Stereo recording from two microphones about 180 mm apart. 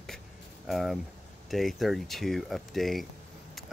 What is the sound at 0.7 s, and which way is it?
Speech, centre (ahead or behind).